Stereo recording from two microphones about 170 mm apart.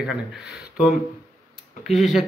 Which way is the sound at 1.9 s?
Centre (ahead or behind).